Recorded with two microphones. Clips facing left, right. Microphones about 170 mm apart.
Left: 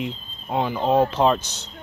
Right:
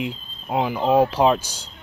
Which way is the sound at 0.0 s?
5° right (ahead or behind).